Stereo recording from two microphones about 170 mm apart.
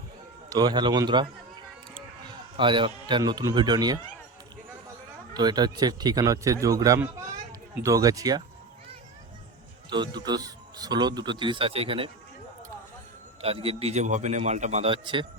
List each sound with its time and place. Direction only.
0.5 s a man's voice: 25° right (ahead or behind)
2.6 s a man's voice: 30° right (ahead or behind)
5.3 s a man's voice: 25° right (ahead or behind)
9.9 s a man's voice: 25° right (ahead or behind)
13.4 s a man's voice: 35° right (ahead or behind)